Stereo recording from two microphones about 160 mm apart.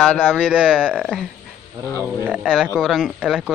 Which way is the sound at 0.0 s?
10° left (ahead or behind).